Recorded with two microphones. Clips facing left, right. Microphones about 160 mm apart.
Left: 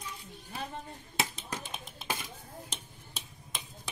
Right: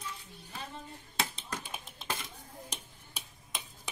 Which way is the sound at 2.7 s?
10° right (ahead or behind).